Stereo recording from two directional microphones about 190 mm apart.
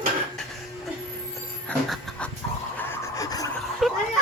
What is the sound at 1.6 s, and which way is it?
Music, 5° left (ahead or behind).